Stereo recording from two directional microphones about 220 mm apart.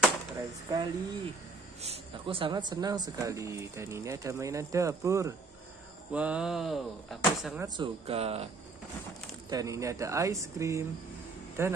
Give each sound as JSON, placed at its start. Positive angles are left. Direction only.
{"t": 0.7, "sound": "speech", "side_deg": -20}
{"t": 7.6, "sound": "speech", "side_deg": -20}
{"t": 9.5, "sound": "speech", "side_deg": -15}